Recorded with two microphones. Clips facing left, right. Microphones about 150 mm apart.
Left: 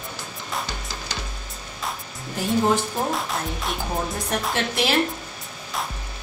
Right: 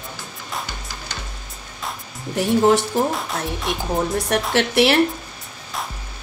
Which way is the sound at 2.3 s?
70° right (ahead or behind).